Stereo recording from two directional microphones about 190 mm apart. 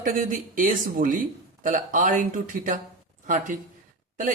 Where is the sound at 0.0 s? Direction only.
45° right (ahead or behind).